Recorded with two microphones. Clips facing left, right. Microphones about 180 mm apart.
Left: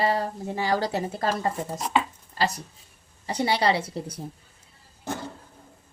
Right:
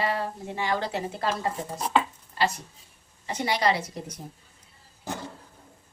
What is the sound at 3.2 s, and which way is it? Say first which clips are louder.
A woman's voice: left 2 dB; 35° left (ahead or behind).